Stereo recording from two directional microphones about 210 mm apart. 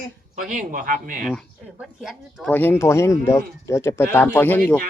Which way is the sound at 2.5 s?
10° left (ahead or behind).